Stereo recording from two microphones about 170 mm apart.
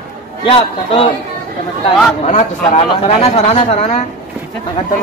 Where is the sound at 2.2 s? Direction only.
40° left (ahead or behind).